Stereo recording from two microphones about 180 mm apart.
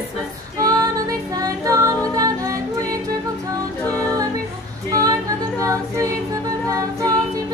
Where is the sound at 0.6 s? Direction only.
20° right (ahead or behind).